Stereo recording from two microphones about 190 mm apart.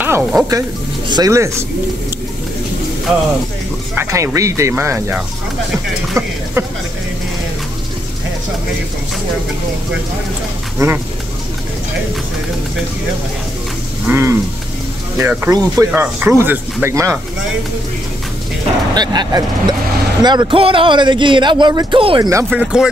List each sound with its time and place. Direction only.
0.0 s speech: 10° right (ahead or behind)
0.5 s speech: 20° right (ahead or behind)
3.9 s speech: 15° right (ahead or behind)
10.8 s speech: 15° right (ahead or behind)
14.0 s speech: 15° right (ahead or behind)
18.9 s speech: 20° right (ahead or behind)
22.3 s speech: 10° right (ahead or behind)